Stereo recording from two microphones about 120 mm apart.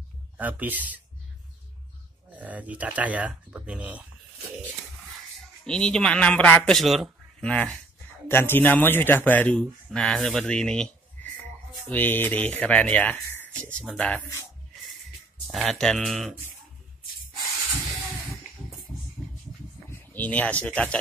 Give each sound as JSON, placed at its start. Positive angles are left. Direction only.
{"t": 0.4, "sound": "speech", "side_deg": -15}
{"t": 2.3, "sound": "speech", "side_deg": -15}
{"t": 5.7, "sound": "speech", "side_deg": 5}
{"t": 15.4, "sound": "speech", "side_deg": 0}
{"t": 19.9, "sound": "speech", "side_deg": 15}